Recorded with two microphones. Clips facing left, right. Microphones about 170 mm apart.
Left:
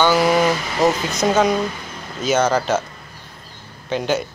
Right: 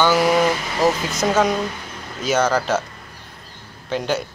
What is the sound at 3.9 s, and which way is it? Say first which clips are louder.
Speech: left 2 dB; centre (ahead or behind).